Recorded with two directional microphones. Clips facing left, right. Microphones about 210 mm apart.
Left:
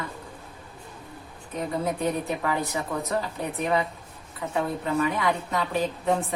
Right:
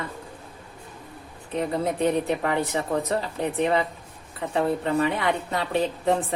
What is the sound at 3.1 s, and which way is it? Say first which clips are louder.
A woman's voice: right 2 dB; 30° right (ahead or behind).